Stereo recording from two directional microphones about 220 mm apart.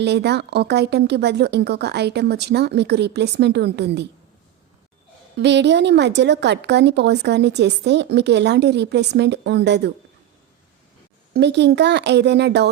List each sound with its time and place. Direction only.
0.0 s a woman's voice: 50° right (ahead or behind)
5.4 s a woman's voice: 50° right (ahead or behind)
11.3 s a woman's voice: 50° right (ahead or behind)